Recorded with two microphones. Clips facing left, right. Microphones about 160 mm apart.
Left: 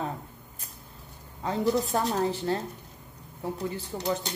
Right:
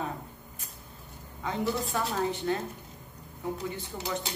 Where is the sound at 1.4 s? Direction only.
35° left (ahead or behind).